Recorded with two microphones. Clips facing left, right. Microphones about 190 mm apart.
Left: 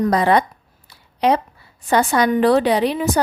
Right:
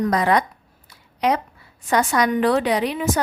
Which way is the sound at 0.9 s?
30° left (ahead or behind).